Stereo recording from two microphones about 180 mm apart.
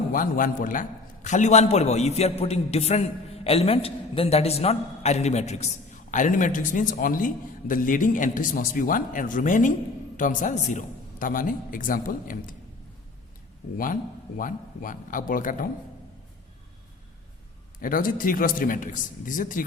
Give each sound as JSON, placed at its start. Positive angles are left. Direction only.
{"t": 0.1, "sound": "a man's voice", "side_deg": 50}
{"t": 13.7, "sound": "a man's voice", "side_deg": 50}
{"t": 17.7, "sound": "a man's voice", "side_deg": 50}